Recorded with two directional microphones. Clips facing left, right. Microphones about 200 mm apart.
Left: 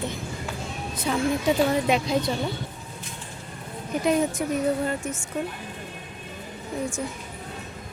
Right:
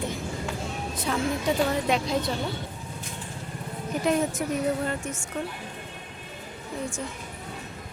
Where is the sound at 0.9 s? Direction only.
Centre (ahead or behind).